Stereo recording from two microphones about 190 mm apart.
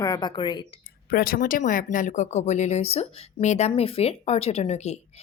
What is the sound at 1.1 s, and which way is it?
A woman's voice, 50° left (ahead or behind).